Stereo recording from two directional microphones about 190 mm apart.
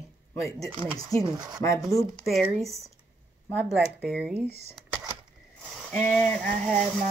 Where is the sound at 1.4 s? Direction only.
20° right (ahead or behind).